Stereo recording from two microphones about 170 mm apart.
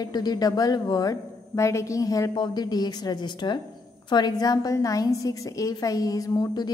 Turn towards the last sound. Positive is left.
turn(degrees=20)  # may be behind; listen again after turning